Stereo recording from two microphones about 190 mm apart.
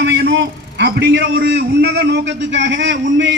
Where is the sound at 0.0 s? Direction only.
65° right (ahead or behind).